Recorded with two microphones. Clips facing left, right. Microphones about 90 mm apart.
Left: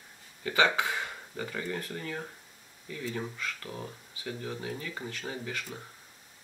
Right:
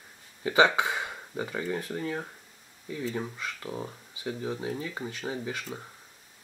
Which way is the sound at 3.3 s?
15° right (ahead or behind).